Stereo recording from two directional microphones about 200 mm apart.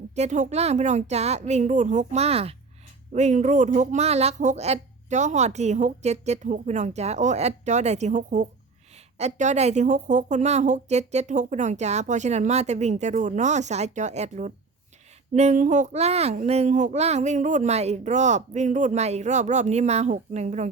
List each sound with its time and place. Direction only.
0.2 s speech: 35° right (ahead or behind)